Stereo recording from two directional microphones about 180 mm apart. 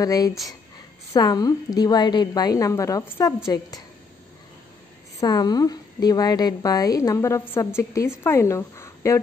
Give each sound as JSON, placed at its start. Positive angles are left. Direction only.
{"t": 0.0, "sound": "a woman's voice", "side_deg": 20}
{"t": 5.2, "sound": "a woman's voice", "side_deg": 20}